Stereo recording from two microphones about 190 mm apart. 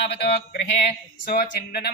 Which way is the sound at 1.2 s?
45° left (ahead or behind).